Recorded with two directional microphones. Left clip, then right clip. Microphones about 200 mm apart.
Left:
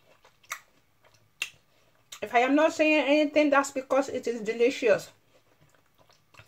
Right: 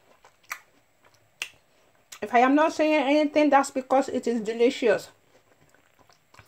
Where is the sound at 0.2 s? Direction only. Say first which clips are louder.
Right 2 dB; 35° right (ahead or behind).